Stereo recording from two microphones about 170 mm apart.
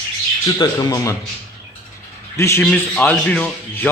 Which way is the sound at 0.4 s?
25° left (ahead or behind).